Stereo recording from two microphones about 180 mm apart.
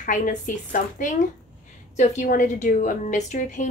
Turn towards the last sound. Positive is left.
turn(degrees=45)  # may be behind; listen again after turning